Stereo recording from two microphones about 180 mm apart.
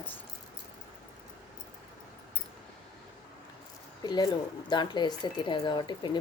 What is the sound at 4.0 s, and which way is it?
Speech, 25° left (ahead or behind).